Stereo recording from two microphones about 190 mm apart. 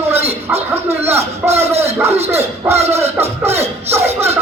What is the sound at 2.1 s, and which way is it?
Music, 35° right (ahead or behind).